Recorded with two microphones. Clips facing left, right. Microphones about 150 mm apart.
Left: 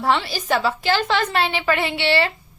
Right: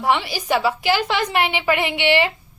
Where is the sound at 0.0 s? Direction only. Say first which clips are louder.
Even; 15° right (ahead or behind).